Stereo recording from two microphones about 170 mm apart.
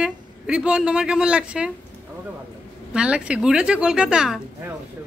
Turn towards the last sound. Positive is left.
turn(degrees=-5)  # may be behind; listen again after turning